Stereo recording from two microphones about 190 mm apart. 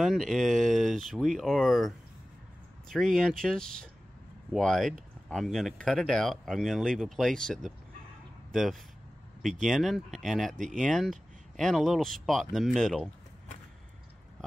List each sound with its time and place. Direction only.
0.0 s speech: centre (ahead or behind)
9.4 s speech: centre (ahead or behind)